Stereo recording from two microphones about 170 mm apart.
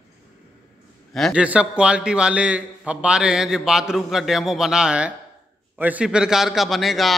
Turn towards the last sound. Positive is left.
turn(degrees=0)  # may be behind; listen again after turning